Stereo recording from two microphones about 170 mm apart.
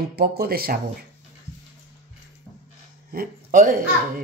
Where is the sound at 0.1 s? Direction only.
65° right (ahead or behind).